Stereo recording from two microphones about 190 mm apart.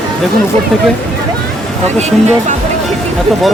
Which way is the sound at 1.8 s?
35° right (ahead or behind).